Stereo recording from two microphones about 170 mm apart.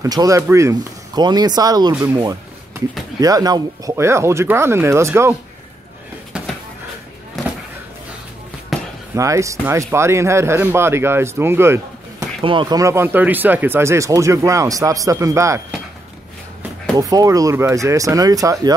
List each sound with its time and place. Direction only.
0.0 s speech: 20° right (ahead or behind)
2.0 s a sound: 20° right (ahead or behind)
3.2 s speech: 20° right (ahead or behind)
6.3 s a sound: 5° right (ahead or behind)
8.7 s basketball bounce: centre (ahead or behind)
9.1 s speech: 20° right (ahead or behind)
12.4 s speech: 30° right (ahead or behind)
16.9 s speech: 20° right (ahead or behind)